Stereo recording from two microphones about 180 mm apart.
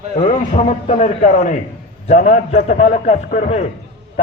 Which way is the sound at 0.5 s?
40° left (ahead or behind).